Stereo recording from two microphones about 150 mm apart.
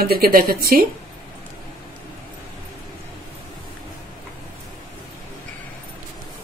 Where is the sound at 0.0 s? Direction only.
85° right.